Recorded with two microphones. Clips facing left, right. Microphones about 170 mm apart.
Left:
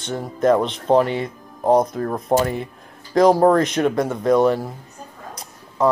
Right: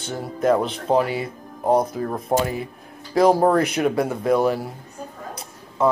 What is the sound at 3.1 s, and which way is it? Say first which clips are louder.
Speech: left 2 dB; 5° right (ahead or behind).